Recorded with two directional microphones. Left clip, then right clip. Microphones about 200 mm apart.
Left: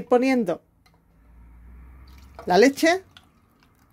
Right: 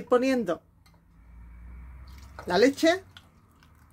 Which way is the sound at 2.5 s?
45° left (ahead or behind).